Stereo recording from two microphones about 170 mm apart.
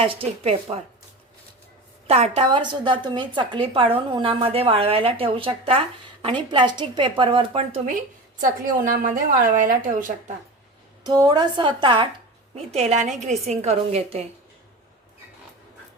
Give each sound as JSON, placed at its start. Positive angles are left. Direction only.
{"t": 0.0, "sound": "a woman's voice", "side_deg": -35}
{"t": 2.0, "sound": "a woman's voice", "side_deg": -35}
{"t": 8.4, "sound": "a woman's voice", "side_deg": -50}
{"t": 11.0, "sound": "speech", "side_deg": -25}
{"t": 12.5, "sound": "a woman's voice", "side_deg": -40}